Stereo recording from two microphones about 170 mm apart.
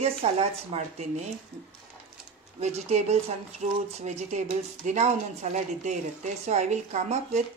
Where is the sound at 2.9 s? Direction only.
40° right (ahead or behind).